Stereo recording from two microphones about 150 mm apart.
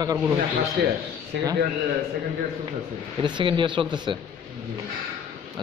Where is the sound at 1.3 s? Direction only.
90° right.